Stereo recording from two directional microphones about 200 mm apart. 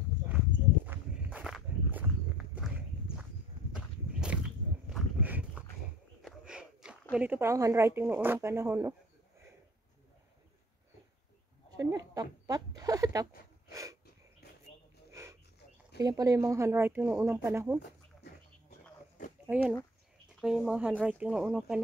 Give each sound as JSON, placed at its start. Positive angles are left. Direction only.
{"t": 0.8, "sound": "walk", "side_deg": -5}
{"t": 3.7, "sound": "walk", "side_deg": -5}
{"t": 4.8, "sound": "a sound", "side_deg": -5}
{"t": 6.2, "sound": "speech", "side_deg": -5}
{"t": 11.7, "sound": "a sound", "side_deg": -15}
{"t": 13.7, "sound": "snort", "side_deg": -15}
{"t": 15.0, "sound": "a sound", "side_deg": -15}
{"t": 16.0, "sound": "speech", "side_deg": -20}
{"t": 19.4, "sound": "speech", "side_deg": -5}